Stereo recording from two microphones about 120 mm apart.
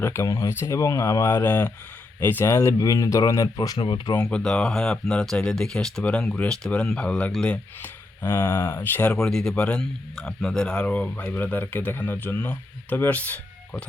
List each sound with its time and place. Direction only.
0.0 s speech: 20° left (ahead or behind)
3.8 s speech: 45° left (ahead or behind)
4.1 s speech: 10° left (ahead or behind)
9.1 s speech: 5° left (ahead or behind)